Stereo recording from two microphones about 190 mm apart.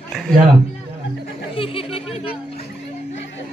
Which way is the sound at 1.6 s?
30° left (ahead or behind).